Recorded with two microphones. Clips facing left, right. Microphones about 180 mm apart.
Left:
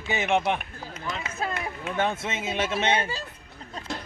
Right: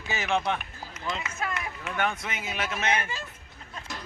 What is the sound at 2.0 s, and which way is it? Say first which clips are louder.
Speech: left 3 dB; 25° left (ahead or behind).